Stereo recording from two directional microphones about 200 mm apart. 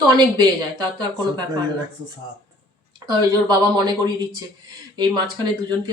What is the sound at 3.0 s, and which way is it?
Speech, 20° right (ahead or behind).